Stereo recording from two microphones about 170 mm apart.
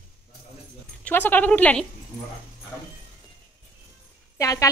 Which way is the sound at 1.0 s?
10° left (ahead or behind).